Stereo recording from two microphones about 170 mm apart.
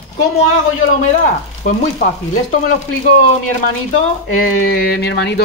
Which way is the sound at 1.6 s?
55° left (ahead or behind).